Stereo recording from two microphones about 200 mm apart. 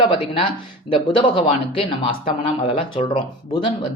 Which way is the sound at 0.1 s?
25° left (ahead or behind).